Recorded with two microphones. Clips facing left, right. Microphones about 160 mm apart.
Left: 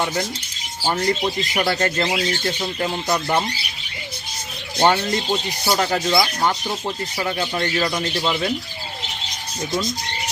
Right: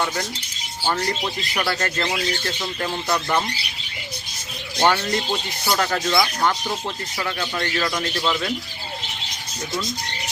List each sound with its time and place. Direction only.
0.0 s speech: 25° left (ahead or behind)
4.8 s speech: 20° left (ahead or behind)